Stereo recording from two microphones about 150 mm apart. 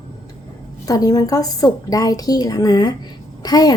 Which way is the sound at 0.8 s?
25° left (ahead or behind).